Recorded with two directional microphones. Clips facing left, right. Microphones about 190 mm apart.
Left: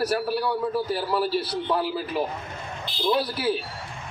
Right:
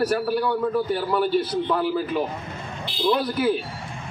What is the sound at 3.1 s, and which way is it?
Speech, 30° left (ahead or behind).